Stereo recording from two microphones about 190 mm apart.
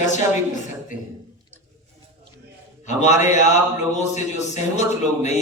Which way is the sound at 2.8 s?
40° left (ahead or behind).